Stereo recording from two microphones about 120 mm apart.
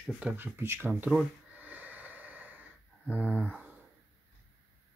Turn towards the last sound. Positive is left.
turn(degrees=-10)  # may be behind; listen again after turning